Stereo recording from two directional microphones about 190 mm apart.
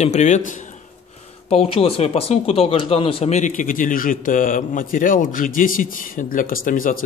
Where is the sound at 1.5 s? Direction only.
30° left (ahead or behind).